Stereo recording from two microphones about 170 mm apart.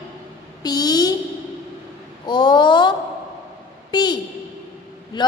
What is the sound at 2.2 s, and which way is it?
Speech, 25° left (ahead or behind).